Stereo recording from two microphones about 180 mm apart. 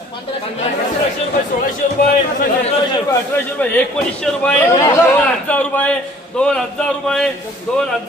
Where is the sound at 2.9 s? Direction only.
15° left (ahead or behind).